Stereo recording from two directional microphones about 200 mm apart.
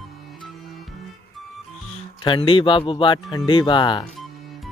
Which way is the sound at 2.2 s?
25° left (ahead or behind).